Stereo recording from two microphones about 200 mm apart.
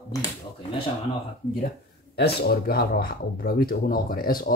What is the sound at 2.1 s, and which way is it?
Speech, 55° left (ahead or behind).